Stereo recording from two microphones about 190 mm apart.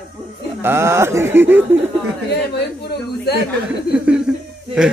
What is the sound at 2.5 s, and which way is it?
Speech, 60° left (ahead or behind).